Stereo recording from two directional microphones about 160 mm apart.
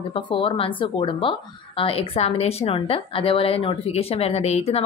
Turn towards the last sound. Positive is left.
turn(degrees=40)  # may be behind; listen again after turning